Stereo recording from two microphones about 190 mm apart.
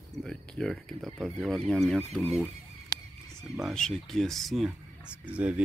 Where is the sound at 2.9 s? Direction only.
20° left (ahead or behind).